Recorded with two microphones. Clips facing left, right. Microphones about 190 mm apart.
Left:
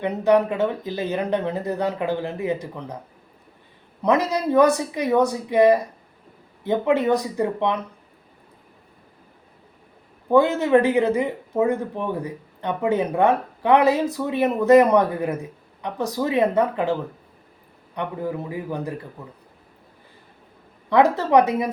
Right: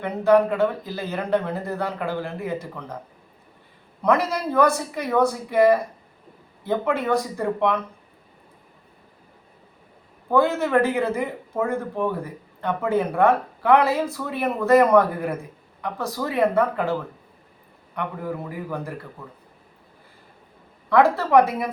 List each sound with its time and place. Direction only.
0.0 s speech: 20° left (ahead or behind)
4.0 s speech: 20° left (ahead or behind)
10.3 s speech: 20° left (ahead or behind)
20.9 s speech: 20° left (ahead or behind)